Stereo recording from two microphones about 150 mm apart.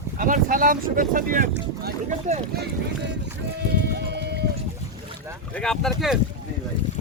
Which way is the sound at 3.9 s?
90° right.